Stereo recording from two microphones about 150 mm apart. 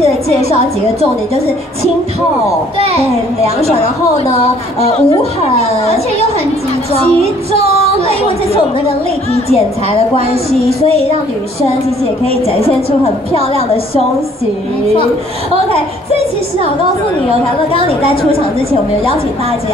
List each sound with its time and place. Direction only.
3.5 s a woman's voice: 45° left (ahead or behind)
12.4 s a woman's voice: 40° left (ahead or behind)